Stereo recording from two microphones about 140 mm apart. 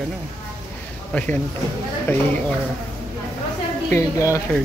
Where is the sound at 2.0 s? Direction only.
15° left (ahead or behind).